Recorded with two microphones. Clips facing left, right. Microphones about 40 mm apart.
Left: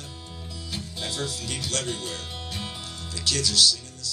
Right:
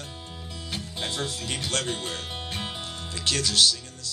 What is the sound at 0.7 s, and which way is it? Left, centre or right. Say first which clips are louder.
Speech: right 1 dB; right.